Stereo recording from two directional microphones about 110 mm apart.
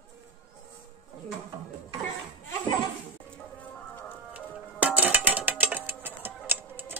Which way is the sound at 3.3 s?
15° left (ahead or behind).